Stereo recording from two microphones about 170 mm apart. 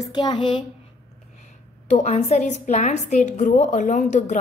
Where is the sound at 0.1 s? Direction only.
25° left (ahead or behind).